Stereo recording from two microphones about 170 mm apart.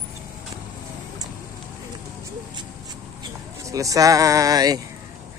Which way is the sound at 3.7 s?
20° right (ahead or behind).